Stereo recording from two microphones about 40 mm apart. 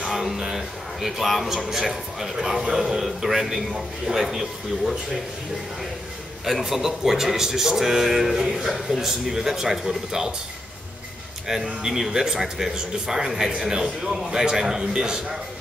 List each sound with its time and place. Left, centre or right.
0.1 s a man's voice: centre
6.4 s a man's voice: centre
11.4 s a man's voice: centre